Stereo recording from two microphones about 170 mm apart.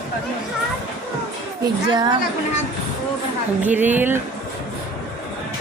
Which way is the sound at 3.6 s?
10° right (ahead or behind).